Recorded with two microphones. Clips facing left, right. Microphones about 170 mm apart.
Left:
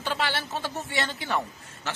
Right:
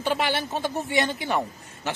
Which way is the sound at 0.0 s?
15° right (ahead or behind).